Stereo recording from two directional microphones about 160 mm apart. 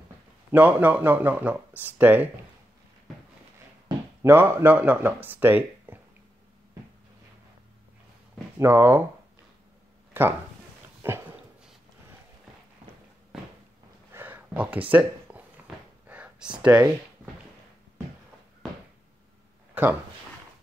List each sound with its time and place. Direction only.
0.5 s speech: 10° right (ahead or behind)
4.2 s speech: 15° right (ahead or behind)
8.5 s speech: 15° right (ahead or behind)
10.1 s speech: 15° right (ahead or behind)
11.0 s dog: 15° right (ahead or behind)
14.1 s a sound: 10° right (ahead or behind)
16.5 s speech: 5° right (ahead or behind)
19.7 s a sound: 10° right (ahead or behind)